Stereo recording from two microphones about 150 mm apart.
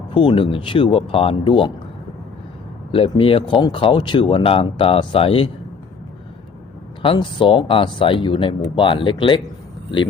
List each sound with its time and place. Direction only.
0.1 s speech: 35° left (ahead or behind)
2.9 s speech: 35° left (ahead or behind)
7.0 s speech: 35° left (ahead or behind)